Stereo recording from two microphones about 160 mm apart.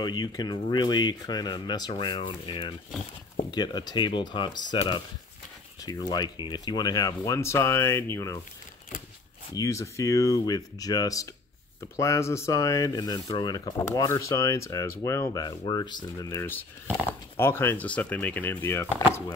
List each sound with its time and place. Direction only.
0.0 s speech: 25° left (ahead or behind)
9.5 s speech: 20° left (ahead or behind)